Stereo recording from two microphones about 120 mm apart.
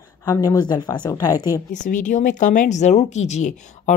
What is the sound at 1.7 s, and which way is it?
Speech, 90° left.